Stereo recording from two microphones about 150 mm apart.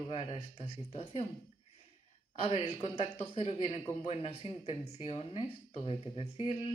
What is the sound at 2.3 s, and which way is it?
Speech, 40° left (ahead or behind).